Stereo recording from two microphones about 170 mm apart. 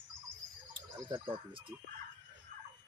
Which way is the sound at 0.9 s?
25° right (ahead or behind).